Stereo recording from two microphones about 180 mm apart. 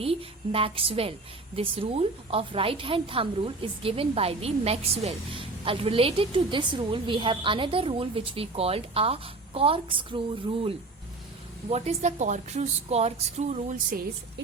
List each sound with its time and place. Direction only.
0.0 s a woman's voice: 30° right (ahead or behind)
11.7 s a woman's voice: 40° right (ahead or behind)